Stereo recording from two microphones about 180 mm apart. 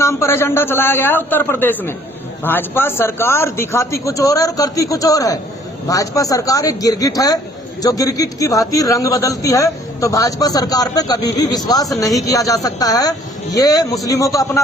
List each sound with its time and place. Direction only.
0.0 s a man's voice: 15° left (ahead or behind)